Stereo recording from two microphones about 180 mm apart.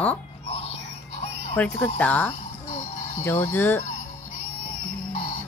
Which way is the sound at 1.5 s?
10° left (ahead or behind).